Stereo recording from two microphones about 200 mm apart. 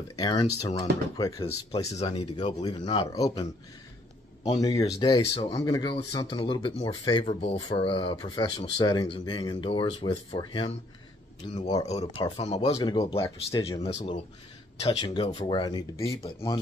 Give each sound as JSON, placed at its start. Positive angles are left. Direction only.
{"t": 0.1, "sound": "speech", "side_deg": 20}
{"t": 4.5, "sound": "speech", "side_deg": 20}
{"t": 11.9, "sound": "speech", "side_deg": 30}
{"t": 12.7, "sound": "speech", "side_deg": 20}
{"t": 13.8, "sound": "speech", "side_deg": 30}